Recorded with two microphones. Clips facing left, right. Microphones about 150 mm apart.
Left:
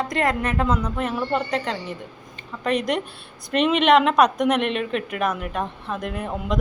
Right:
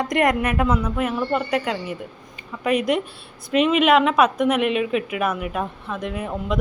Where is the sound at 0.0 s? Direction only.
15° right (ahead or behind).